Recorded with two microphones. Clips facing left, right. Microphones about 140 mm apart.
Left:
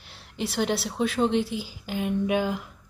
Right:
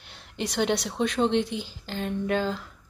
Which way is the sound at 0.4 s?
5° left (ahead or behind).